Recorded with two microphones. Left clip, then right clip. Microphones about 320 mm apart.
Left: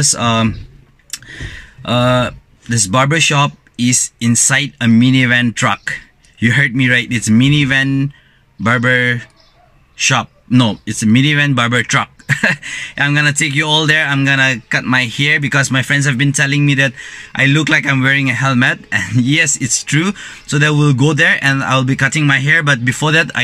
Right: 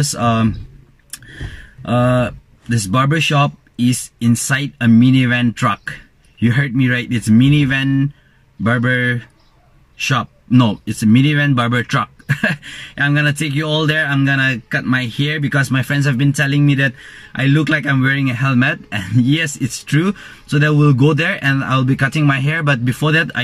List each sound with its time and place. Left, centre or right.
0.0 s speech: centre
1.2 s a sound: left
1.9 s speech: centre
16.8 s speech: left
17.4 s speech: centre